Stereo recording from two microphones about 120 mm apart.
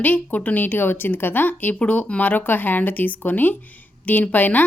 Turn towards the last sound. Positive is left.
turn(degrees=15)  # may be behind; listen again after turning